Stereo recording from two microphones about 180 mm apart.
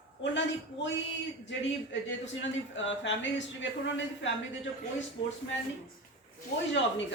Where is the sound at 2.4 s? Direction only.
90° left.